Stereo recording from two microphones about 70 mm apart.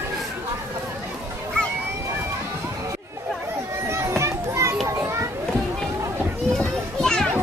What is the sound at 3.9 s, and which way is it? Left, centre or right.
Children playing, right.